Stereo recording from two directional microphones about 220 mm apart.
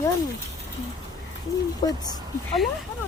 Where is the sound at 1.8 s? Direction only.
20° left (ahead or behind).